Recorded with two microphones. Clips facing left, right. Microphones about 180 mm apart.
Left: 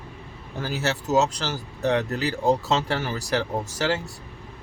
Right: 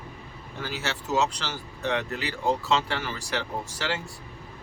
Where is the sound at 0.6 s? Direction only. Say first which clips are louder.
Left 6 dB; 40° left (ahead or behind).